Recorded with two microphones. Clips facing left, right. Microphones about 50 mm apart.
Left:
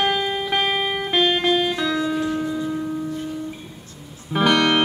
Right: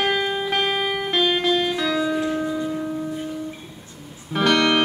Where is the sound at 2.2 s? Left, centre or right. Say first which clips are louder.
Even; centre.